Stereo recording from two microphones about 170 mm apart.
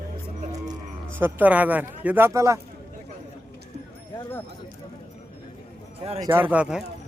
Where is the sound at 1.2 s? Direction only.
10° right (ahead or behind).